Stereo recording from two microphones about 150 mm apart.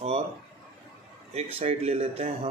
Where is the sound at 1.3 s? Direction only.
45° right (ahead or behind).